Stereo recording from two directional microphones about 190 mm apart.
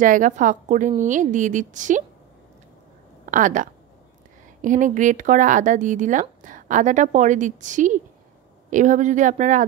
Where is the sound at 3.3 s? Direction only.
45° right (ahead or behind).